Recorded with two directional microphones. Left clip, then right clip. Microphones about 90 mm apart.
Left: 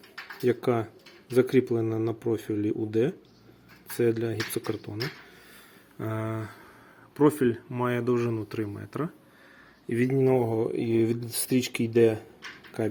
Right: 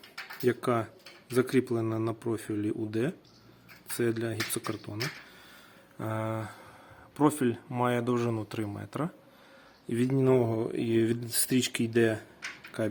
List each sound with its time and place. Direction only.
0.4 s speech: 5° right (ahead or behind)
6.0 s speech: centre (ahead or behind)
7.7 s speech: 15° right (ahead or behind)
10.1 s speech: 40° right (ahead or behind)
10.4 s speech: 25° right (ahead or behind)